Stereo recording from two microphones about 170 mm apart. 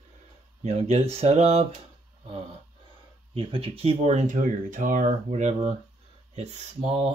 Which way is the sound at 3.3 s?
30° right (ahead or behind).